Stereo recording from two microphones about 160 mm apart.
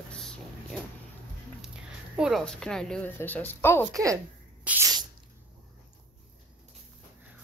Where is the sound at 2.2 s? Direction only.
Centre (ahead or behind).